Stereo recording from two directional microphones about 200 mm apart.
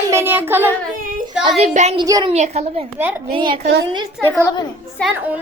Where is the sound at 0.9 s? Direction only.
45° right (ahead or behind).